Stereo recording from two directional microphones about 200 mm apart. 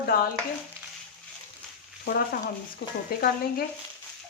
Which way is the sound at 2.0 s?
50° left (ahead or behind).